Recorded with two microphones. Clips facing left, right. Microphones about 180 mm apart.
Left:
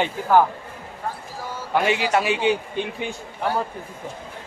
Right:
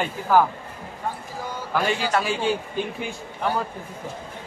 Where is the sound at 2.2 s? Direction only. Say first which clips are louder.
Left 3 dB; 75° left (ahead or behind).